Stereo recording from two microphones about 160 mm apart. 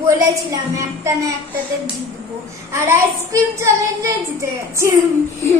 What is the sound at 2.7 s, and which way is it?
A woman's voice, 15° right (ahead or behind).